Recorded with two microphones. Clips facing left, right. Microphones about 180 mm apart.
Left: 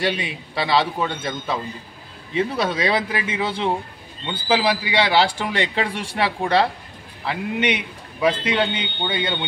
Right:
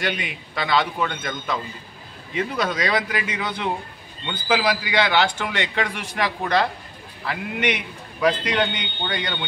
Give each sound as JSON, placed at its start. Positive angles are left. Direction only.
{"t": 0.0, "sound": "a man's voice", "side_deg": 30}